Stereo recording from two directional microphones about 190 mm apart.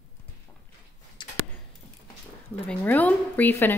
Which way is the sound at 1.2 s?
25° left (ahead or behind).